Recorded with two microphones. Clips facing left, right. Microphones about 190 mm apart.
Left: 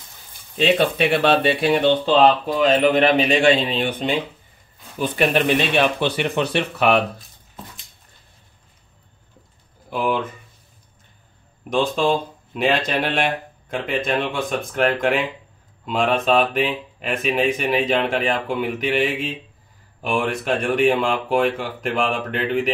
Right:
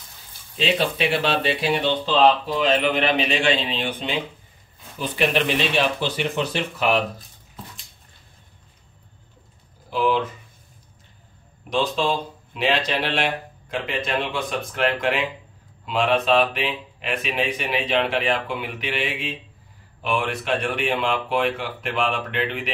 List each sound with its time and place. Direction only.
0.6 s speech: 55° left (ahead or behind)
9.8 s speech: 55° left (ahead or behind)
11.7 s speech: 50° left (ahead or behind)